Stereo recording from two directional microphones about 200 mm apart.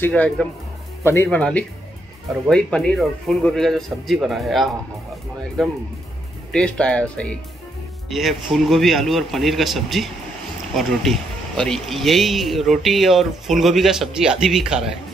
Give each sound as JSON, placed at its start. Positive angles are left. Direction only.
{"t": 0.0, "sound": "speech", "side_deg": 5}